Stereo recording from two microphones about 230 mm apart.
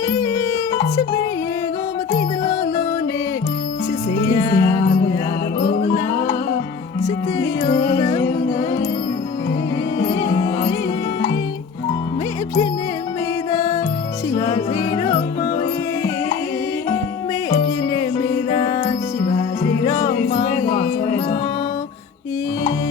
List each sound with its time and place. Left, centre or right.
0.1 s music: centre
4.4 s music: centre
4.6 s music: left
7.0 s music: centre
13.5 s music: centre
17.9 s music: centre